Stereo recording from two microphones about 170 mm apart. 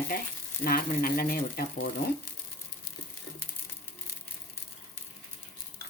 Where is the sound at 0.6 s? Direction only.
60° left (ahead or behind).